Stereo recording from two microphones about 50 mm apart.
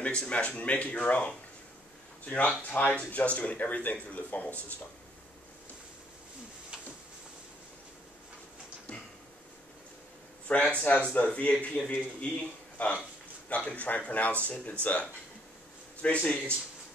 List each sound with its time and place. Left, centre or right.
0.0 s speech: left
10.8 s speech: left